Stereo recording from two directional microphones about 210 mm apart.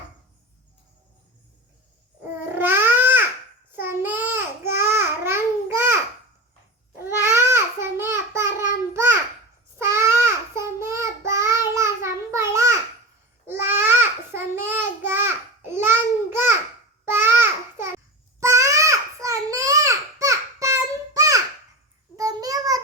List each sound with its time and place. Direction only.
2.6 s a sound: 10° right (ahead or behind)
3.7 s child singing: 10° right (ahead or behind)
4.6 s babbling: 10° right (ahead or behind)
7.0 s babbling: 10° right (ahead or behind)
8.9 s a sound: 10° right (ahead or behind)
9.7 s babbling: 10° right (ahead or behind)
10.5 s child singing: 15° right (ahead or behind)
13.5 s babbling: 10° right (ahead or behind)
18.3 s a sound: 15° right (ahead or behind)